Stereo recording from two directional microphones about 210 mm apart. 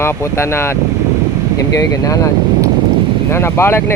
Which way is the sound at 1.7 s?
15° left (ahead or behind).